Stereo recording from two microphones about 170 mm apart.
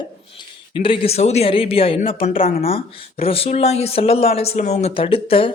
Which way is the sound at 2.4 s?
60° left (ahead or behind).